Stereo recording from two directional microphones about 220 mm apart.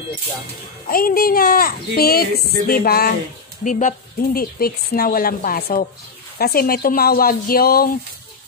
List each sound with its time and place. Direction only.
0.8 s speech: 40° left (ahead or behind)